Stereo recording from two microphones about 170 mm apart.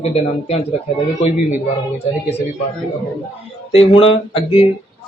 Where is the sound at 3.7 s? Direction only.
35° left (ahead or behind).